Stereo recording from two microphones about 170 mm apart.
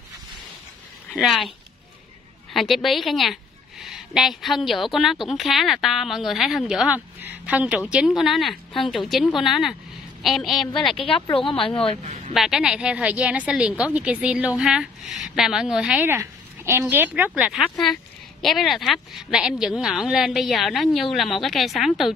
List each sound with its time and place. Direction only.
1.1 s a woman's voice: centre (ahead or behind)
2.5 s a woman's voice: centre (ahead or behind)
11.0 s speech: 30° left (ahead or behind)
12.4 s a woman's voice: 5° right (ahead or behind)